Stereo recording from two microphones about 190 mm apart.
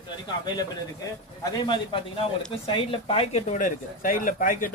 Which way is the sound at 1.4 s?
20° left (ahead or behind).